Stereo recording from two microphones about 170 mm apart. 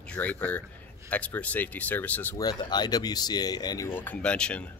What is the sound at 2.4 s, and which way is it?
Speech, 25° left (ahead or behind).